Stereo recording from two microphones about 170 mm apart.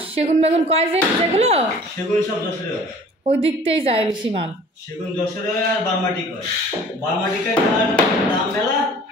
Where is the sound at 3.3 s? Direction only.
35° right (ahead or behind).